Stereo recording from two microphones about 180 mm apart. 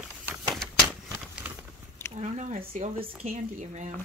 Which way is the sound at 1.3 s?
10° right (ahead or behind).